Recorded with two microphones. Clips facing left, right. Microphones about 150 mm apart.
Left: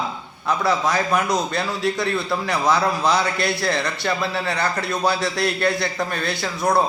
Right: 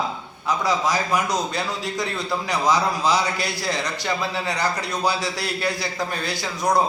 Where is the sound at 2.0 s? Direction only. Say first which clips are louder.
Left 3 dB; 15° right (ahead or behind).